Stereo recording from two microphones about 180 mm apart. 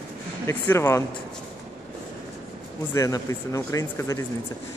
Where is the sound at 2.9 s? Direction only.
15° left (ahead or behind).